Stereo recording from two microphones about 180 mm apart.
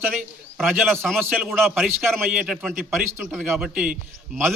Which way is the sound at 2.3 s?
5° right (ahead or behind).